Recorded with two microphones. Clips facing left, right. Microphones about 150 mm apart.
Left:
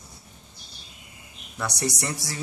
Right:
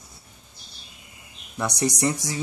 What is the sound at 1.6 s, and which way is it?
Speech, 15° right (ahead or behind).